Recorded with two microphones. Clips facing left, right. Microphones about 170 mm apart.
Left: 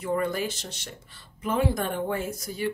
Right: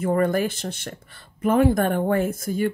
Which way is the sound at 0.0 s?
50° right (ahead or behind).